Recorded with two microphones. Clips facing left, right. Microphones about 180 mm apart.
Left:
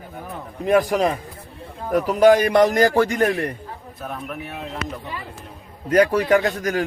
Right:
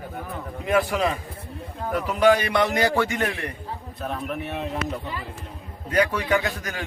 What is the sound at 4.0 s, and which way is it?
Speech, centre (ahead or behind).